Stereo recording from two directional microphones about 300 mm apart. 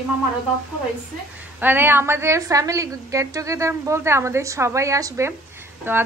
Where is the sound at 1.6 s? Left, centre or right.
Centre.